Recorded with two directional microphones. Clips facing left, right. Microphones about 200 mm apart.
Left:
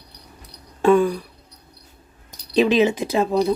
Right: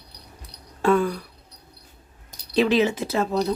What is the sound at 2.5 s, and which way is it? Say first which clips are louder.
Speech: left 3 dB; 15° left (ahead or behind).